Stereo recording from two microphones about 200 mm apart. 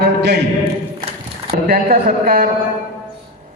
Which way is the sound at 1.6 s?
45° right (ahead or behind).